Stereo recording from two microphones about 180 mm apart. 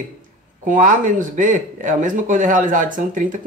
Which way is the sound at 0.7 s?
45° right (ahead or behind).